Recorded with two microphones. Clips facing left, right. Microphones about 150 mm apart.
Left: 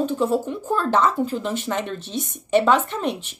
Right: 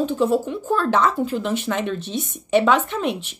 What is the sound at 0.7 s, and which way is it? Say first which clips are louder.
Speech: right 1 dB; 10° left (ahead or behind).